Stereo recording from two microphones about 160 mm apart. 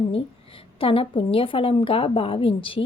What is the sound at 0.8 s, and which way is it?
A woman's voice, 35° left (ahead or behind).